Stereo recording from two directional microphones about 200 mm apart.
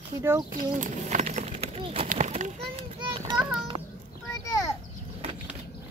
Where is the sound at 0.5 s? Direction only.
40° right (ahead or behind).